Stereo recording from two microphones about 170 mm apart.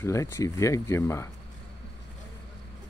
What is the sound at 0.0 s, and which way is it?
Speech, 15° left (ahead or behind).